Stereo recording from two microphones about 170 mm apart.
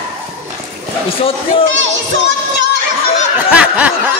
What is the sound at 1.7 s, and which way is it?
Speech, 90° right.